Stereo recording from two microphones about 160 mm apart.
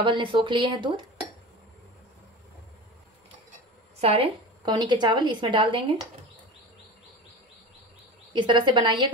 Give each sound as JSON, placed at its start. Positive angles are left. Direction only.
{"t": 0.0, "sound": "speech", "side_deg": -30}
{"t": 4.0, "sound": "a woman's voice", "side_deg": -35}
{"t": 8.3, "sound": "a woman's voice", "side_deg": -30}